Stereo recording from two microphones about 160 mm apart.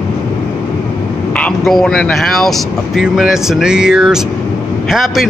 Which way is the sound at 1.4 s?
5° left (ahead or behind).